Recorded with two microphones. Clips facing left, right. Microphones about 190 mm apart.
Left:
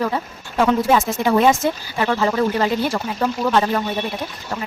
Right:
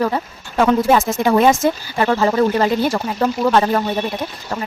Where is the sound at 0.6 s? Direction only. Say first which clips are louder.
Right 2 dB; 50° right (ahead or behind).